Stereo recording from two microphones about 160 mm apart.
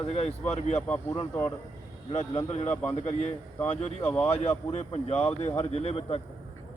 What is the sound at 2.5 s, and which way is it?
Speech, 45° left (ahead or behind).